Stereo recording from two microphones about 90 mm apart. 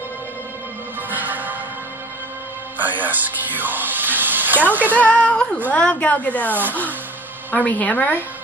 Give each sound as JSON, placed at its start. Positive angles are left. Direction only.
{"t": 1.1, "sound": "music", "side_deg": -20}
{"t": 2.8, "sound": "speech", "side_deg": -20}
{"t": 4.9, "sound": "speech", "side_deg": 15}
{"t": 7.5, "sound": "speech", "side_deg": 15}